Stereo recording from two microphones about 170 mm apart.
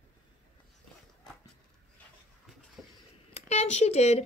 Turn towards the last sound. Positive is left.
turn(degrees=40)  # may be behind; listen again after turning